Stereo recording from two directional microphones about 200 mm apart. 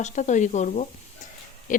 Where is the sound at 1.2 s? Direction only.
40° left (ahead or behind).